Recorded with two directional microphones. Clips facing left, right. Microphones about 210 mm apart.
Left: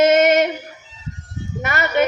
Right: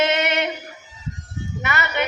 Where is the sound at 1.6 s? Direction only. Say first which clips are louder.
Left 6 dB; 45° left (ahead or behind).